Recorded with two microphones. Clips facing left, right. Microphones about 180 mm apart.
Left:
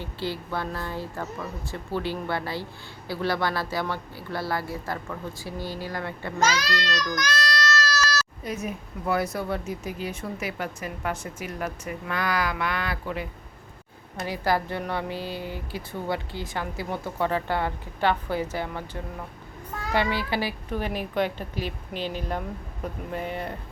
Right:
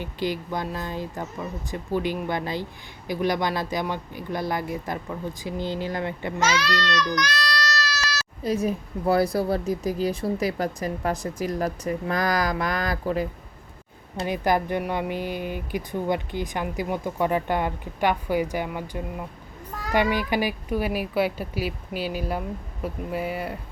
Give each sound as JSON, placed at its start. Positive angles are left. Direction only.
{"t": 0.0, "sound": "speech", "side_deg": -15}
{"t": 6.6, "sound": "a child's voice", "side_deg": 40}
{"t": 7.2, "sound": "a sound", "side_deg": 45}
{"t": 8.4, "sound": "a woman's voice", "side_deg": -35}
{"t": 14.2, "sound": "speech", "side_deg": -20}
{"t": 19.9, "sound": "speech", "side_deg": -15}